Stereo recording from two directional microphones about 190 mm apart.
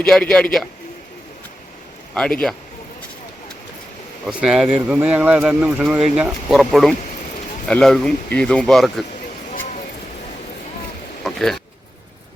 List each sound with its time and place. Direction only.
0.0 s speech: 5° left (ahead or behind)
4.3 s speech: 5° right (ahead or behind)
11.2 s a sound: centre (ahead or behind)